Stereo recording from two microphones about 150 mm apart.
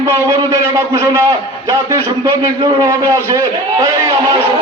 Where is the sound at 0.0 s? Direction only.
20° right (ahead or behind).